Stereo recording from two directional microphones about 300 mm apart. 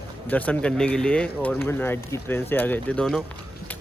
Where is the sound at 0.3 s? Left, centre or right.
Centre.